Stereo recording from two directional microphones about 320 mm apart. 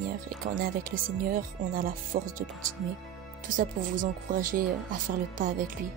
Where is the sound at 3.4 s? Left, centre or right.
Right.